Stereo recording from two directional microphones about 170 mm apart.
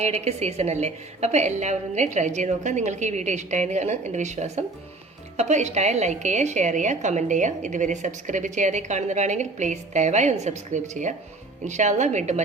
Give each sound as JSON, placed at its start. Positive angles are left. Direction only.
{"t": 0.0, "sound": "a woman's voice", "side_deg": -40}